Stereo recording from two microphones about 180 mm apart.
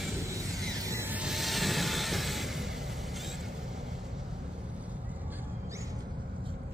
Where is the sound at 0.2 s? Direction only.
15° right (ahead or behind).